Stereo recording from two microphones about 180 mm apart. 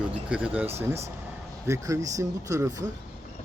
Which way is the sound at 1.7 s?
15° right (ahead or behind).